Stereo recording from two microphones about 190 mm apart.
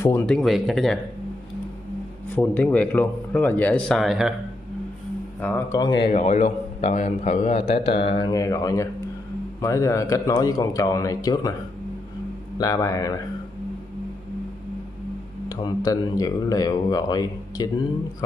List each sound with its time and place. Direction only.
0.0 s speech: 10° left (ahead or behind)
0.4 s speech: centre (ahead or behind)
2.3 s speech: 10° left (ahead or behind)
5.4 s speech: 10° left (ahead or behind)
5.8 s speech: 20° left (ahead or behind)
6.1 s a man's voice: 40° left (ahead or behind); by 11.5 s 20° left (ahead or behind)
12.5 s speech: 20° left (ahead or behind)
15.4 s speech: 20° left (ahead or behind)